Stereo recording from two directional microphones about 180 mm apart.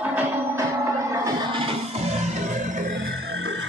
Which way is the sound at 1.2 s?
30° right (ahead or behind).